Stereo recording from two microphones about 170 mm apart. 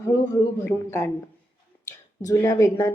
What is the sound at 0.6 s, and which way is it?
Speech, 15° left (ahead or behind).